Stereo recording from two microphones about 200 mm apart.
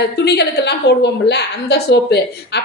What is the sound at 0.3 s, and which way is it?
A woman's voice, 55° left (ahead or behind).